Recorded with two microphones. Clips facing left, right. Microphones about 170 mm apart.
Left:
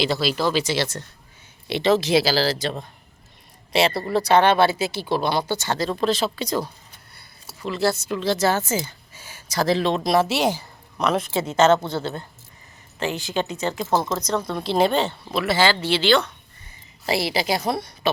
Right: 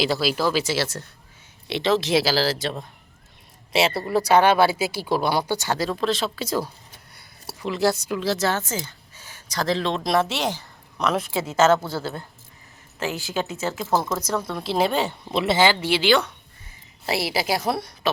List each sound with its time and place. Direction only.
0.0 s speech: 10° right (ahead or behind)
7.6 s speech: 15° right (ahead or behind); by 11.0 s 10° left (ahead or behind)
11.0 s speech: centre (ahead or behind)
15.2 s speech: 20° right (ahead or behind); by 18.1 s centre (ahead or behind)